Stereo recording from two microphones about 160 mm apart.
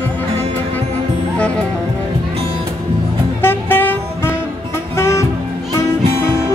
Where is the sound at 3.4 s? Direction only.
15° left (ahead or behind).